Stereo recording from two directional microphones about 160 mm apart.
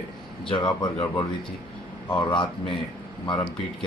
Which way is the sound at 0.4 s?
30° left (ahead or behind).